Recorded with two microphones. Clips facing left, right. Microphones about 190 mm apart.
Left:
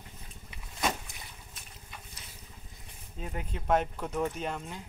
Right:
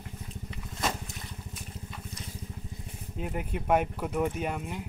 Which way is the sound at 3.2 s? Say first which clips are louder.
Right 5 dB; 15° right (ahead or behind).